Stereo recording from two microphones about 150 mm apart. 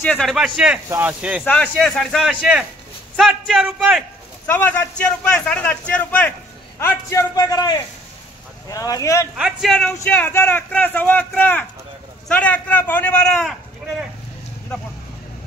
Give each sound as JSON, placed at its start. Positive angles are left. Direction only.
{"t": 0.0, "sound": "speech", "side_deg": 5}
{"t": 1.4, "sound": "speech", "side_deg": 5}
{"t": 4.5, "sound": "a man's voice", "side_deg": 10}
{"t": 9.4, "sound": "a man's voice", "side_deg": 0}